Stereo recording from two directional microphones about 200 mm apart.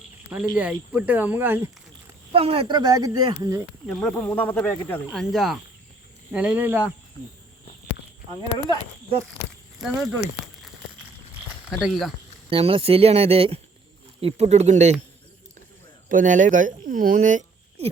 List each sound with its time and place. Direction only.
0.3 s speech: 10° right (ahead or behind)
2.3 s speech: 30° right (ahead or behind)
3.8 s speech: 5° left (ahead or behind)
5.0 s speech: centre (ahead or behind)
8.4 s speech: 20° right (ahead or behind)
9.8 s speech: 5° right (ahead or behind)
11.7 s speech: 5° right (ahead or behind)
12.5 s speech: 25° right (ahead or behind)
16.0 s speech: 40° right (ahead or behind)